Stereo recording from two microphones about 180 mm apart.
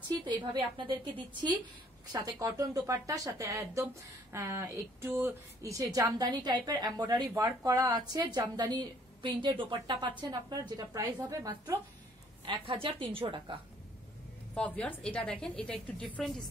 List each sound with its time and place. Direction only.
0.1 s speech: 25° right (ahead or behind)
2.1 s speech: 15° right (ahead or behind)
12.4 s speech: 30° right (ahead or behind)
14.5 s a woman's voice: 5° left (ahead or behind)